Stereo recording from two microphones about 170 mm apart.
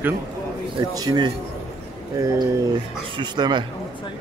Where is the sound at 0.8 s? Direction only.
25° right (ahead or behind).